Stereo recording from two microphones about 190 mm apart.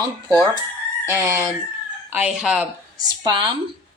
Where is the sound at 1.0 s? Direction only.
15° right (ahead or behind).